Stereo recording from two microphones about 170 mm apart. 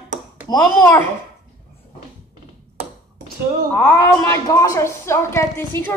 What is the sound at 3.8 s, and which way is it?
A woman's voice, 15° left (ahead or behind).